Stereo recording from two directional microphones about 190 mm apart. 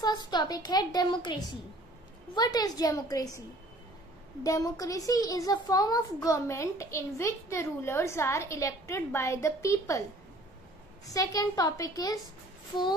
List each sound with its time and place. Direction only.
0.0 s a woman's voice: 20° left (ahead or behind)
11.1 s a woman's voice: 20° left (ahead or behind)